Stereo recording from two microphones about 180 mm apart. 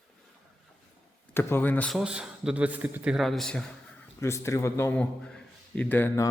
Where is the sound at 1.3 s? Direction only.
10° left (ahead or behind).